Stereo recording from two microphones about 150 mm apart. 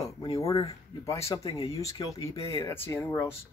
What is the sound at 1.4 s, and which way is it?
Speech, 40° left (ahead or behind).